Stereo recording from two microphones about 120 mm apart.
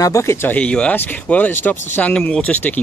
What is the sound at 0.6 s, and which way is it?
Speech, 10° left (ahead or behind).